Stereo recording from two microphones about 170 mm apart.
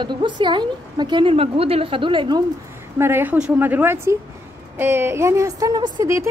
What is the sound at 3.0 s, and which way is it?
A woman's voice, 10° right (ahead or behind).